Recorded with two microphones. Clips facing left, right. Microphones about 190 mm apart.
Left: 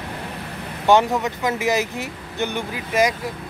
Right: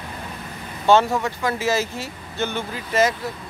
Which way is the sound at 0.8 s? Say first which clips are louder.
Even; 15° left (ahead or behind).